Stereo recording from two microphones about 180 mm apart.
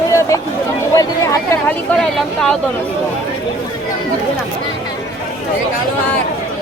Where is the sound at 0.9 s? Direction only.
20° left (ahead or behind).